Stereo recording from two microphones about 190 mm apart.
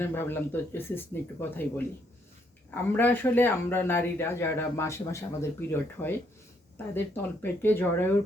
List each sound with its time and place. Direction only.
0.0 s speech: 10° left (ahead or behind)
2.9 s speech: 10° left (ahead or behind)
7.2 s speech: 10° left (ahead or behind)